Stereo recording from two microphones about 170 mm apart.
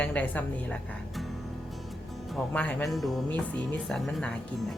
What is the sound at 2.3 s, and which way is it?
Speech, 5° left (ahead or behind).